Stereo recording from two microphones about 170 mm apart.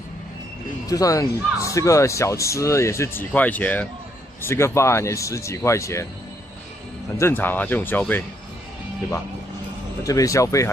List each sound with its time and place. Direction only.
0.8 s speech: 20° left (ahead or behind)
7.2 s speech: 15° left (ahead or behind)
10.0 s speech: 20° left (ahead or behind)